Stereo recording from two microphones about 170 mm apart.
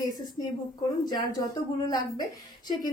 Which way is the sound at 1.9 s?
25° left (ahead or behind).